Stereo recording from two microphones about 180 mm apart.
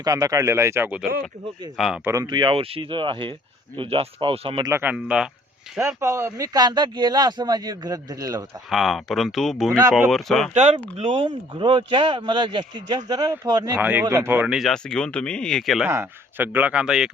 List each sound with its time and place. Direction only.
0.0 s speech: 20° right (ahead or behind); by 2.0 s centre (ahead or behind)
2.0 s speech: 20° right (ahead or behind)
4.7 s speech: 10° right (ahead or behind)
6.0 s speech: 15° right (ahead or behind)
8.7 s speech: centre (ahead or behind)
10.5 s speech: 40° right (ahead or behind); by 13.7 s 20° right (ahead or behind)
13.7 s speech: 10° right (ahead or behind)
15.9 s speech: 10° right (ahead or behind)